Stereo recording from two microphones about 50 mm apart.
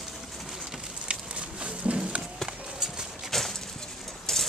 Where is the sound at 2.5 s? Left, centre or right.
Centre.